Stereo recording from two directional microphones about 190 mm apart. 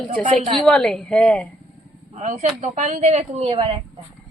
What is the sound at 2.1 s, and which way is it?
Speech, 35° right (ahead or behind).